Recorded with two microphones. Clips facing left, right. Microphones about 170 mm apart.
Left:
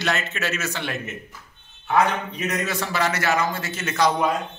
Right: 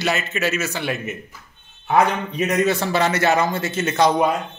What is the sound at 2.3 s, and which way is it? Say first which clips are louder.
A man's voice: right 7 dB; 25° right (ahead or behind).